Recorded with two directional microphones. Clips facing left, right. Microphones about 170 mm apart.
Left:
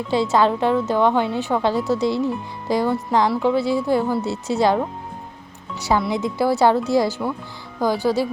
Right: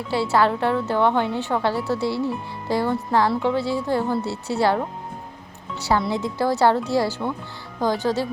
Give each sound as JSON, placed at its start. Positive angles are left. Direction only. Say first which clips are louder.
{"t": 0.1, "sound": "speech", "louder": "left 2 dB", "side_deg": 20}
{"t": 6.1, "sound": "speech", "louder": "left 2 dB", "side_deg": 15}